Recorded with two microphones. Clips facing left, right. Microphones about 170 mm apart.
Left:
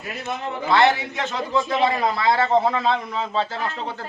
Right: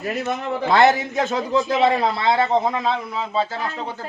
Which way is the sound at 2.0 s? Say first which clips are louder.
Right 1 dB; 25° right (ahead or behind).